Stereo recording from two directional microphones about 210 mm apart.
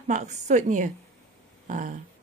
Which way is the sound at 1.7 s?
40° right (ahead or behind).